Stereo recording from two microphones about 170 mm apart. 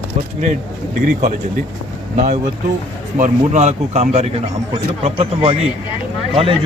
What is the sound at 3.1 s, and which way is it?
Speech, 45° right (ahead or behind).